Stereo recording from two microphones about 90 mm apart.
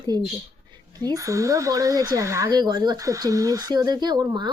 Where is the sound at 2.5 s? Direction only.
45° right (ahead or behind).